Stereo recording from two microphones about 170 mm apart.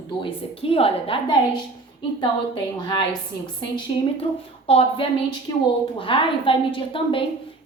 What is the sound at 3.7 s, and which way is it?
A woman's voice, 30° left (ahead or behind).